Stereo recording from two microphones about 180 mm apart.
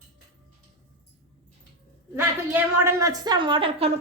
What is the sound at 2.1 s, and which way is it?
A woman's voice, 15° right (ahead or behind).